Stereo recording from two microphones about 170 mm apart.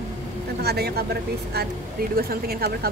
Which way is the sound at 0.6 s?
70° right (ahead or behind).